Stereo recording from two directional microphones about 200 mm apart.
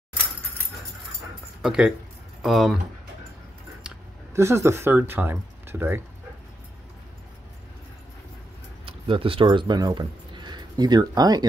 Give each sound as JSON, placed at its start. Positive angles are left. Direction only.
{"t": 1.6, "sound": "speech", "side_deg": -5}
{"t": 3.8, "sound": "speech", "side_deg": -15}
{"t": 8.8, "sound": "speech", "side_deg": -25}